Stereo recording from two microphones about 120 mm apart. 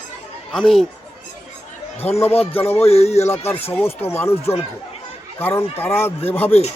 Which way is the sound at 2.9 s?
60° left (ahead or behind).